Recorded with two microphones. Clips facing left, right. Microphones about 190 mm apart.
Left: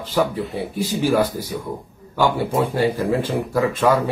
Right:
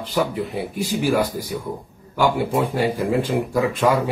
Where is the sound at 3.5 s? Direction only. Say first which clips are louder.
Left 2 dB; 15° right (ahead or behind).